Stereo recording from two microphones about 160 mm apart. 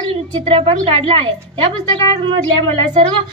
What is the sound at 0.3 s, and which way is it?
A woman's voice, 35° right (ahead or behind).